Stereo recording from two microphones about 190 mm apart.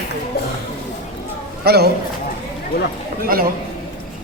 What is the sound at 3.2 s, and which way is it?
Speech, 50° right (ahead or behind).